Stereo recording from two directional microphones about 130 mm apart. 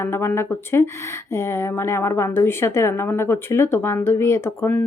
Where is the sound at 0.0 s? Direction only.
20° left (ahead or behind).